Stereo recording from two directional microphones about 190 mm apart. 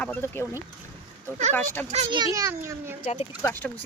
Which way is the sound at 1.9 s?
25° right (ahead or behind).